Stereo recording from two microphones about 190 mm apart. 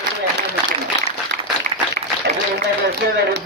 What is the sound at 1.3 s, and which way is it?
Applause, 45° right (ahead or behind).